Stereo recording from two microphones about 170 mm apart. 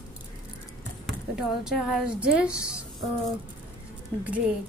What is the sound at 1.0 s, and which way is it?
A woman's voice, centre (ahead or behind).